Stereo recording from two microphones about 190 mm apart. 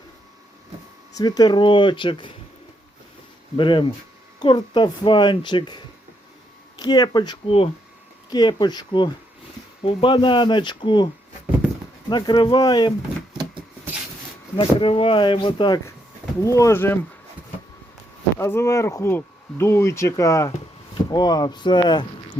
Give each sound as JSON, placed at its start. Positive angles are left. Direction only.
{"t": 1.1, "sound": "speech", "side_deg": 20}
{"t": 3.6, "sound": "speech", "side_deg": 25}
{"t": 14.5, "sound": "speech", "side_deg": 25}
{"t": 18.3, "sound": "speech", "side_deg": 15}